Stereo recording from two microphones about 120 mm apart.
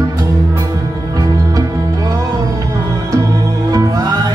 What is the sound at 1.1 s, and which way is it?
Music, 30° right (ahead or behind).